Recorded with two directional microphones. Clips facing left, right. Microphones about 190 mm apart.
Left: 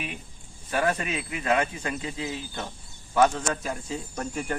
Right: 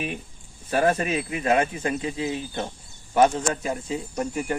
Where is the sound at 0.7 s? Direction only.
30° right (ahead or behind).